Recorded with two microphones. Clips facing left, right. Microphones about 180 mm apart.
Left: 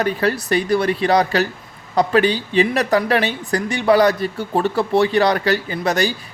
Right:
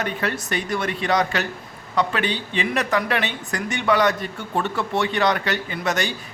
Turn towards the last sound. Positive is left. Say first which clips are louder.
# left 5 dB
turn(degrees=35)  # may be behind; listen again after turning